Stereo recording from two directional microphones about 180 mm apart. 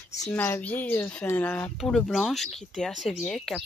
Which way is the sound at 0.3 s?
10° left (ahead or behind).